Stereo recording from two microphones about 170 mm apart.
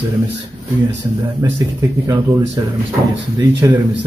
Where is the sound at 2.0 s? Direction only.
20° right (ahead or behind).